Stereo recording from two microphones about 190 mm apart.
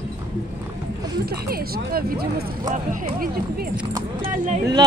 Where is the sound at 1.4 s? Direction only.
55° right (ahead or behind).